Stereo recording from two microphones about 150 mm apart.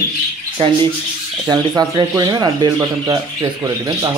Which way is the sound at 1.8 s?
25° right (ahead or behind).